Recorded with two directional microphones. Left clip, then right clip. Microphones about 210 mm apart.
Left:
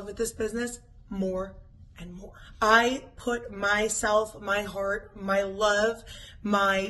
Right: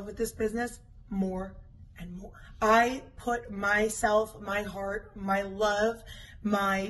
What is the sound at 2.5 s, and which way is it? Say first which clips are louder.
A woman's voice: left 2 dB; 20° left (ahead or behind).